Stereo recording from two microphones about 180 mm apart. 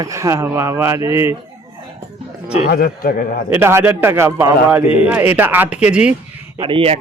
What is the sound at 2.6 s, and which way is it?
Speech, 55° left (ahead or behind).